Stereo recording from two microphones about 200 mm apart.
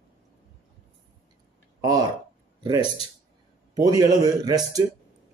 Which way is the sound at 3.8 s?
20° right (ahead or behind).